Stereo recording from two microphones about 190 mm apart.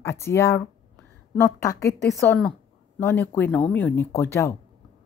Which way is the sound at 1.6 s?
15° left (ahead or behind).